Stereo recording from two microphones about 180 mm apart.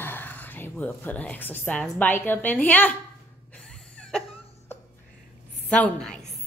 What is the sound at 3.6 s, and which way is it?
Cough, 5° left (ahead or behind).